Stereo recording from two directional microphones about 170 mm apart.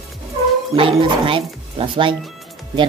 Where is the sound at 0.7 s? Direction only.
30° right (ahead or behind).